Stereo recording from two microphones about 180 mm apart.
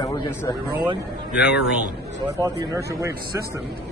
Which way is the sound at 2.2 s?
15° right (ahead or behind).